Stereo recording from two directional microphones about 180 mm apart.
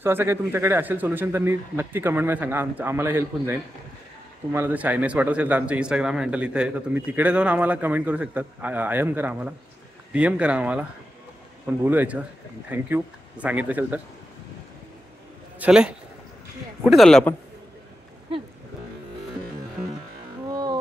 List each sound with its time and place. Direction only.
0.0 s speech: 15° right (ahead or behind)
15.6 s speech: 5° right (ahead or behind)
20.4 s music: 20° right (ahead or behind)